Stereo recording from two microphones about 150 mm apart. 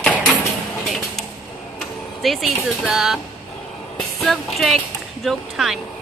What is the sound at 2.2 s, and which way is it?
Speech, centre (ahead or behind).